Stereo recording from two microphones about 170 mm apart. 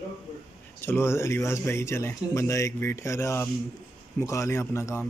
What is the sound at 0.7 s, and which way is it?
Speech, 10° left (ahead or behind).